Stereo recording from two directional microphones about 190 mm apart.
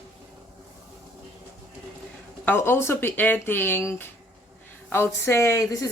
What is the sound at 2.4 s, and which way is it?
Speech, 10° left (ahead or behind).